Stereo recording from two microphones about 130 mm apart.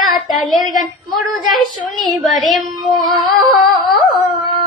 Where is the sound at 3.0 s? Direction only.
35° left (ahead or behind).